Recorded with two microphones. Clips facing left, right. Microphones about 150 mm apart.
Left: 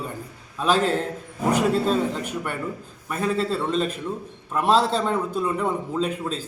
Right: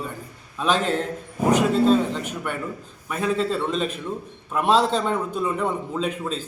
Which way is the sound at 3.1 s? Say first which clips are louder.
Right 1 dB; centre (ahead or behind).